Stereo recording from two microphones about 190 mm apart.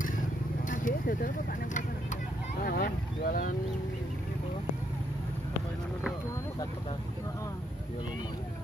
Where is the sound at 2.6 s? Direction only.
50° left (ahead or behind).